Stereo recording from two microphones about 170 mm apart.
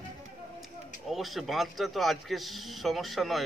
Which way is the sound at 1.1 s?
Centre (ahead or behind).